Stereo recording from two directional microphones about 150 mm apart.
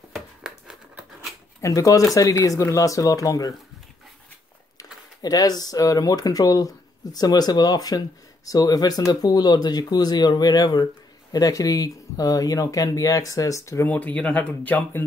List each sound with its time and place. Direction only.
0.1 s a sound: 5° right (ahead or behind)
1.6 s speech: 20° left (ahead or behind)
5.2 s speech: 25° left (ahead or behind)